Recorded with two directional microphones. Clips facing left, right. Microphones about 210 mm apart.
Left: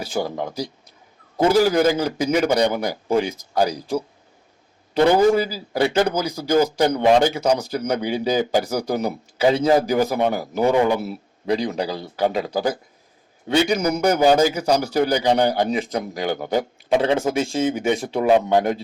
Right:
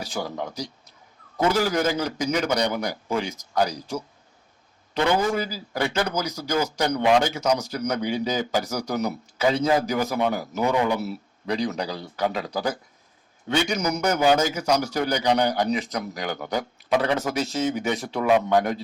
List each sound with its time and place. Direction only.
0.2 s a man's voice: 30° left (ahead or behind)
1.4 s a man's voice: 35° left (ahead or behind)
4.9 s a man's voice: 35° left (ahead or behind)